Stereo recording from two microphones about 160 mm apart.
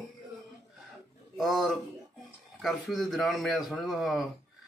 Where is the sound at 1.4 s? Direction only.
Centre (ahead or behind).